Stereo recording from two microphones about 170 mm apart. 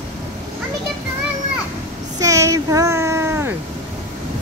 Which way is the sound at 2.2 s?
20° right (ahead or behind).